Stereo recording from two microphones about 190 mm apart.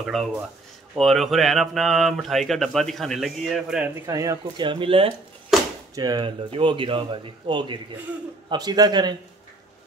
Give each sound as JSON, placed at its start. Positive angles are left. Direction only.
{"t": 0.0, "sound": "speech", "side_deg": 0}
{"t": 4.0, "sound": "speech", "side_deg": -15}